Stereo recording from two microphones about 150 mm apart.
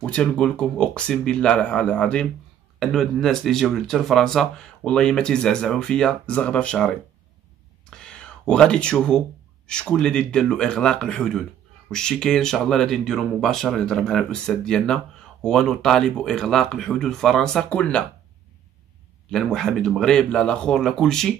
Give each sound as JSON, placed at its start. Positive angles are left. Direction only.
{"t": 0.0, "sound": "speech", "side_deg": 5}
{"t": 7.9, "sound": "a sound", "side_deg": 5}
{"t": 9.7, "sound": "speech", "side_deg": 5}
{"t": 19.3, "sound": "speech", "side_deg": 0}